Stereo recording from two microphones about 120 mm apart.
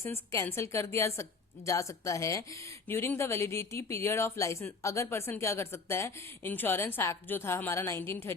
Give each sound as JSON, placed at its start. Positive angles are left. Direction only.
{"t": 0.0, "sound": "a woman's voice", "side_deg": 20}